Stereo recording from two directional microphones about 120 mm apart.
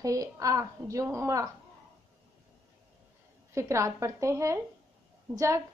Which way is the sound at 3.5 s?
25° right (ahead or behind).